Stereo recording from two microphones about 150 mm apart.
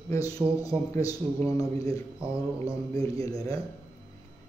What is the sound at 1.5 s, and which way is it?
Speech, 20° left (ahead or behind).